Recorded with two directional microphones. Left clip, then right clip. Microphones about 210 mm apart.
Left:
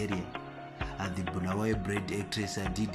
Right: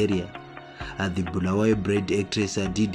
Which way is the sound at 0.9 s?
20° right (ahead or behind).